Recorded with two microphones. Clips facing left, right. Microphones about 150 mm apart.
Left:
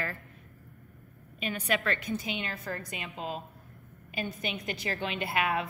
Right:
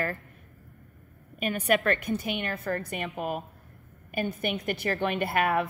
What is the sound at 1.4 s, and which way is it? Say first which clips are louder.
A woman's voice: right 6 dB; 50° right (ahead or behind).